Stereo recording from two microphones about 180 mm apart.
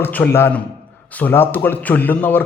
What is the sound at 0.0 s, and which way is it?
A man's voice, 10° left (ahead or behind).